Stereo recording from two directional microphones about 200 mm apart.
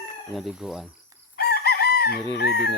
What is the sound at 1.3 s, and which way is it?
Chicken, 50° left (ahead or behind).